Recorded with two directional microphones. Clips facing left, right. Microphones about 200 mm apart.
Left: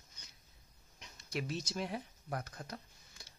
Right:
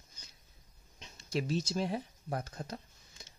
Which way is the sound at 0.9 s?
25° right (ahead or behind).